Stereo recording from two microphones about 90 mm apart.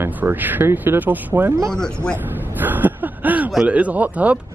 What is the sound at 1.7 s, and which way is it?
Speech, 10° left (ahead or behind).